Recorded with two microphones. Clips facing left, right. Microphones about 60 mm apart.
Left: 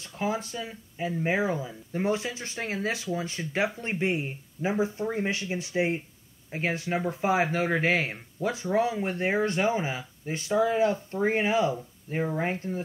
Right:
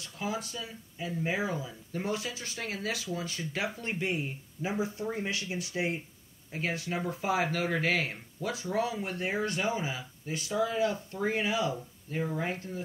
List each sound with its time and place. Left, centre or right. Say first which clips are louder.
0.0 s speech: left 5 dB; left